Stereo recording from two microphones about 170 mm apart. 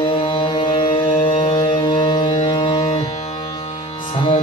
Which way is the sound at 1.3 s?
30° left (ahead or behind).